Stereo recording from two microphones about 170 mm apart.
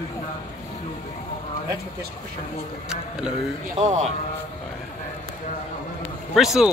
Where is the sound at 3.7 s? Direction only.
40° right (ahead or behind).